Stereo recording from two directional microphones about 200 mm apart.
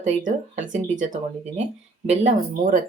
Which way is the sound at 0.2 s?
40° right (ahead or behind).